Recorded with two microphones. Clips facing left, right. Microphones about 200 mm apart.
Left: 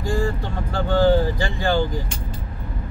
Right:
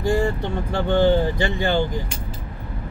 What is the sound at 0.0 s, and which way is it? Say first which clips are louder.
Speech: right 3 dB; 25° right (ahead or behind).